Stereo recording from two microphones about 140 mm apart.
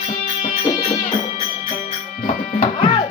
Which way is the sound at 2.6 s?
40° left (ahead or behind).